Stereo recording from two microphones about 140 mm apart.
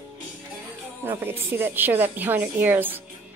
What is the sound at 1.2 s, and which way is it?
A woman's voice, 15° right (ahead or behind).